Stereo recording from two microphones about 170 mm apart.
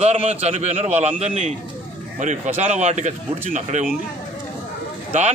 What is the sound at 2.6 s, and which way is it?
Speech, 40° right (ahead or behind).